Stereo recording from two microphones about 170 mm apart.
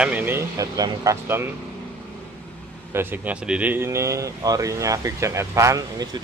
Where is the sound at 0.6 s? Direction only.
20° right (ahead or behind).